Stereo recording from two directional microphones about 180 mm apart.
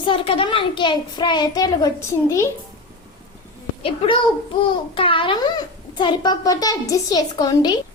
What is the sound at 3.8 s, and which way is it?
Speech, 30° left (ahead or behind).